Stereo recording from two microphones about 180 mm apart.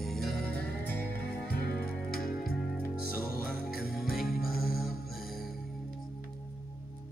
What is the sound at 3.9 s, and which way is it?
Music, centre (ahead or behind).